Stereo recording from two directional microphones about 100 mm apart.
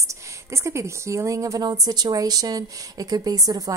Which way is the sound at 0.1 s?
30° right (ahead or behind).